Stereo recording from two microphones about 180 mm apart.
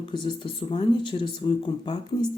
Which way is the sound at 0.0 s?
25° left (ahead or behind).